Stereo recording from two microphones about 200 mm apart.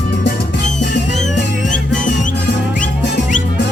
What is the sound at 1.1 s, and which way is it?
Music, 35° left (ahead or behind).